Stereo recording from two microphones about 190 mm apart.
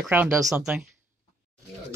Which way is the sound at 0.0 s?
10° right (ahead or behind).